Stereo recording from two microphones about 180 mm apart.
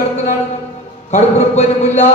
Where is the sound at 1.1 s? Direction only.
40° left (ahead or behind).